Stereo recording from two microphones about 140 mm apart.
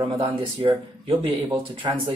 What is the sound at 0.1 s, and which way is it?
A man's voice, 35° right (ahead or behind).